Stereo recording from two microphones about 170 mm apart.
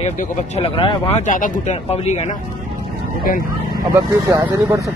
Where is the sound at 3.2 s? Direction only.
60° left (ahead or behind).